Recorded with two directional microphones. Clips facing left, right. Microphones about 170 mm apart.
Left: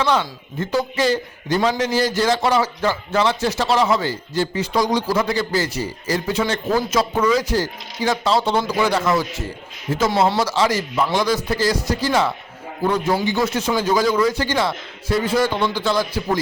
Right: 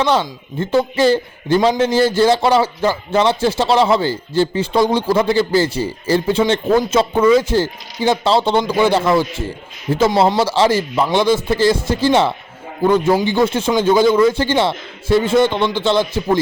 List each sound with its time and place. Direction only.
0.0 s a man's voice: 30° right (ahead or behind)